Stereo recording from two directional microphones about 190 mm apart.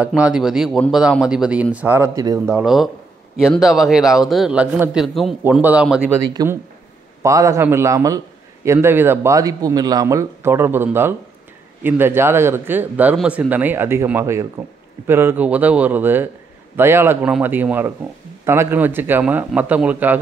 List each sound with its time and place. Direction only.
0.0 s speech: 5° right (ahead or behind)
2.6 s speech: centre (ahead or behind)